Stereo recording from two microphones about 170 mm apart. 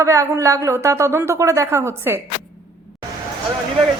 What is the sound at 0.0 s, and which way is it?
Speech, 20° right (ahead or behind).